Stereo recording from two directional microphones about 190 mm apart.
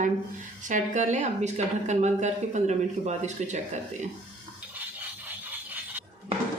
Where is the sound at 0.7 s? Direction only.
40° right (ahead or behind).